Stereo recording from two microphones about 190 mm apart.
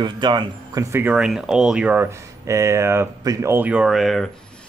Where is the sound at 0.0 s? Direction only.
25° right (ahead or behind).